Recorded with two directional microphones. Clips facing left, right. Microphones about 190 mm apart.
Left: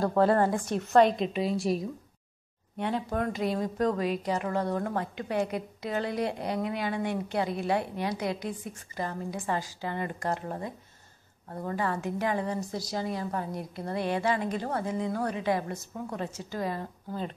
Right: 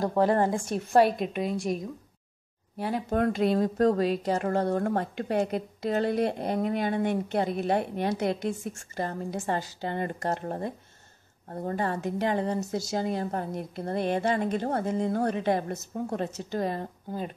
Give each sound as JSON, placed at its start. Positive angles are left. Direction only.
{"t": 0.0, "sound": "a woman's voice", "side_deg": -15}
{"t": 0.7, "sound": "a woman's voice", "side_deg": -10}
{"t": 3.2, "sound": "a woman's voice", "side_deg": -60}
{"t": 3.5, "sound": "a woman's voice", "side_deg": -45}
{"t": 12.9, "sound": "a woman's voice", "side_deg": -50}
{"t": 16.6, "sound": "a woman's voice", "side_deg": -30}